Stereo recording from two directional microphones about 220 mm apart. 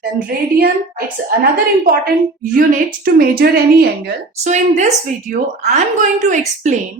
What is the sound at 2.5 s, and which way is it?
A woman's voice, 40° right (ahead or behind).